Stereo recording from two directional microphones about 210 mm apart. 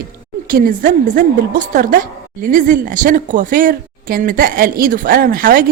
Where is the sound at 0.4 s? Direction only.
40° right (ahead or behind).